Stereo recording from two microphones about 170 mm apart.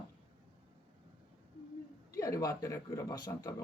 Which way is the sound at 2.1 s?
20° left (ahead or behind).